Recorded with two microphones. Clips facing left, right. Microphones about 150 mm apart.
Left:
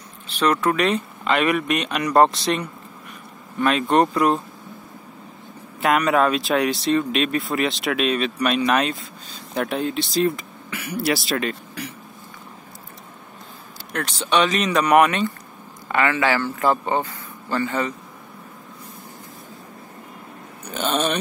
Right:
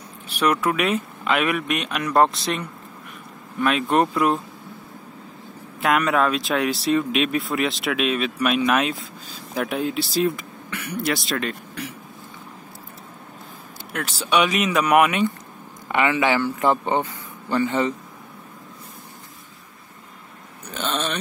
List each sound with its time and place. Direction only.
0.3 s speech: 10° right (ahead or behind)
5.8 s speech: centre (ahead or behind)
13.9 s speech: 5° right (ahead or behind)
20.7 s a sound: 10° left (ahead or behind)